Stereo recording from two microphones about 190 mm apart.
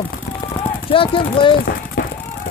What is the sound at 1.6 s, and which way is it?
Run, 50° left (ahead or behind).